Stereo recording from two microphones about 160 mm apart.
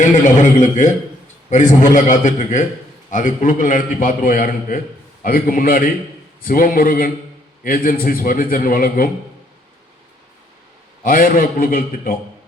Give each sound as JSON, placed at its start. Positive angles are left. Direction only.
{"t": 0.3, "sound": "a man's voice", "side_deg": 50}
{"t": 11.0, "sound": "a man's voice", "side_deg": 60}